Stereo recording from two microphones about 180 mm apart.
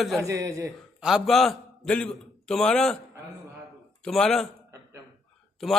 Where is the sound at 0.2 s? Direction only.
15° right (ahead or behind).